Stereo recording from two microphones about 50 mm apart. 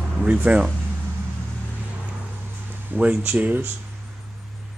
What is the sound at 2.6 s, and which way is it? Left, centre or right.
Speech, right.